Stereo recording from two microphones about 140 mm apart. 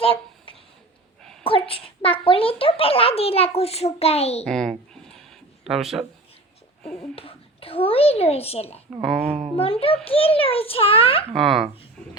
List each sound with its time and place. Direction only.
0.0 s a sound: 40° left (ahead or behind)
1.5 s a child's voice: 40° left (ahead or behind)
4.4 s speech: centre (ahead or behind)
7.2 s a child's voice: 45° left (ahead or behind)
9.0 s speech: centre (ahead or behind)
9.2 s a child's voice: 45° right (ahead or behind)
9.8 s a child's voice: 45° left (ahead or behind)
11.3 s speech: centre (ahead or behind)